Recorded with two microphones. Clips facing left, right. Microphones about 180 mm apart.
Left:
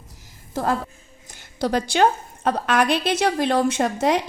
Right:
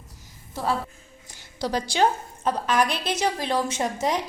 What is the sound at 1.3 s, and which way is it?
A woman's voice, 55° left (ahead or behind).